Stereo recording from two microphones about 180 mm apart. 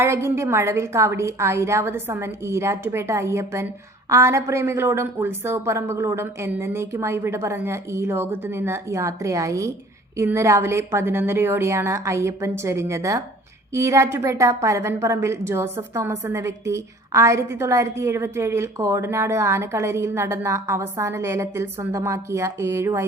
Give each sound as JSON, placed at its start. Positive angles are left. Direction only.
{"t": 0.0, "sound": "a woman's voice", "side_deg": -15}